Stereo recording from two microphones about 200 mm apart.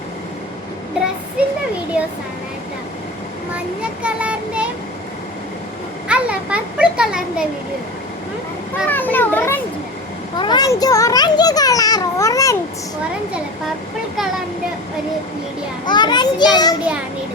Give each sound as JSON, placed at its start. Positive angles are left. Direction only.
{"t": 1.4, "sound": "a child's voice", "side_deg": -5}
{"t": 2.0, "sound": "a sound", "side_deg": -5}
{"t": 4.0, "sound": "child singing", "side_deg": -5}
{"t": 6.1, "sound": "a child's voice", "side_deg": -5}
{"t": 8.9, "sound": "a child's voice", "side_deg": 10}
{"t": 10.3, "sound": "a child's voice", "side_deg": 20}
{"t": 15.9, "sound": "a child's voice", "side_deg": 20}